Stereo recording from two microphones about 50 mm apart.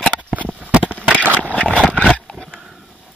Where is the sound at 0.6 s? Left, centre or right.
Right.